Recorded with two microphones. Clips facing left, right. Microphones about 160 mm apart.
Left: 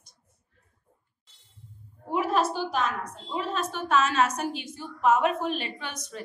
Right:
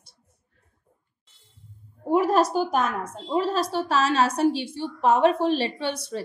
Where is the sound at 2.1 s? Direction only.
40° right (ahead or behind).